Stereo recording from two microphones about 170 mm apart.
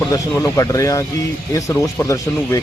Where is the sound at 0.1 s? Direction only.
20° left (ahead or behind).